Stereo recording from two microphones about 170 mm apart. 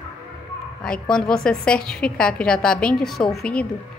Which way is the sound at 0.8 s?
5° left (ahead or behind).